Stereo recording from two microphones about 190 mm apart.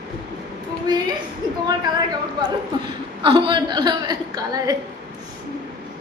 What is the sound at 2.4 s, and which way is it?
A woman's voice, 25° right (ahead or behind).